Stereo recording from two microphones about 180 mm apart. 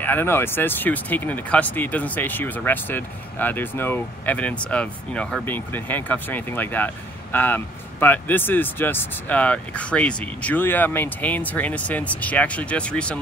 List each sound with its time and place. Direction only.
0.0 s speech: 10° left (ahead or behind)